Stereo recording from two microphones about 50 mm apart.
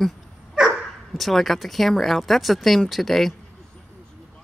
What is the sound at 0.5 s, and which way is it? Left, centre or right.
Dog, centre.